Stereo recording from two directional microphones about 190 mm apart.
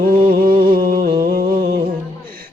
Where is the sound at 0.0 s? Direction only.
50° right (ahead or behind).